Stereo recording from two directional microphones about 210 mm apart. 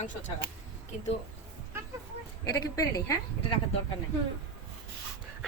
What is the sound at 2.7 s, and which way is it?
Speech, 15° left (ahead or behind).